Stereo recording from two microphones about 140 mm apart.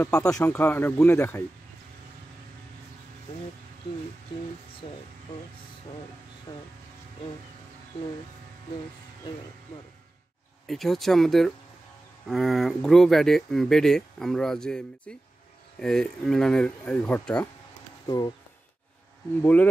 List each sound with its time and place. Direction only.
0.0 s speech: 5° left (ahead or behind)
4.8 s speech: 40° left (ahead or behind)
6.5 s a sound: 30° left (ahead or behind)
10.7 s speech: centre (ahead or behind)
18.0 s speech: 25° left (ahead or behind)
19.4 s speech: 10° left (ahead or behind)